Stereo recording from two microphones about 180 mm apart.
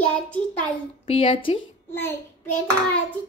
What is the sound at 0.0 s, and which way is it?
Child singing, 5° left (ahead or behind).